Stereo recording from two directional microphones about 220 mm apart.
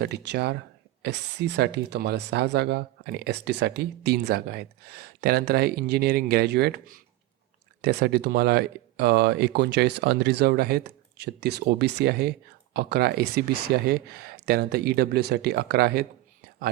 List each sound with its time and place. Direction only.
0.0 s speech: 50° right (ahead or behind)